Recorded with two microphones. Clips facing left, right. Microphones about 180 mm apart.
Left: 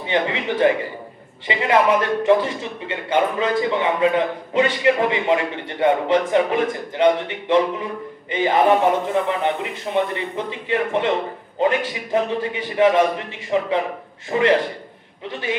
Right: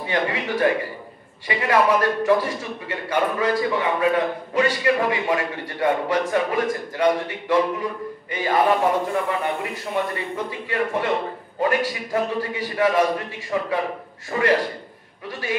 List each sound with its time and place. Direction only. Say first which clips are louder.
0.0 s a man's voice: left 2 dB; 25° left (ahead or behind)